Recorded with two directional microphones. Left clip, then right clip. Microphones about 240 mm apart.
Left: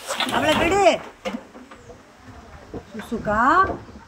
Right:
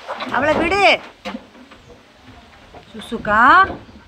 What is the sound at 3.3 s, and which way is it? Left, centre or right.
Speech, centre.